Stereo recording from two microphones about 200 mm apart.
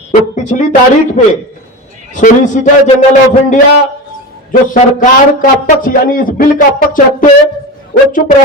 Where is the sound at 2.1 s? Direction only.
40° left (ahead or behind).